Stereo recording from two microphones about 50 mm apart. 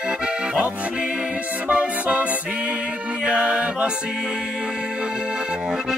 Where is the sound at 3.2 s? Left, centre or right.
Right.